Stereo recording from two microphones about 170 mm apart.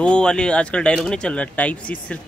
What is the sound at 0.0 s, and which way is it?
Speech, 5° left (ahead or behind).